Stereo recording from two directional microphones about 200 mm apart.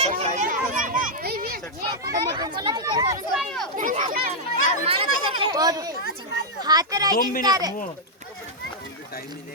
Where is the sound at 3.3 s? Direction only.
Centre (ahead or behind).